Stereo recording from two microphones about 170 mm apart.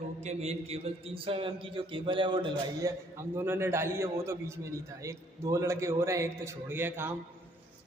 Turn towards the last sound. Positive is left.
turn(degrees=-15)  # may be behind; listen again after turning